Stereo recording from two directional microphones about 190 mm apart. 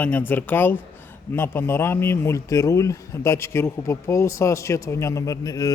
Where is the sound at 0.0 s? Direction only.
10° left (ahead or behind).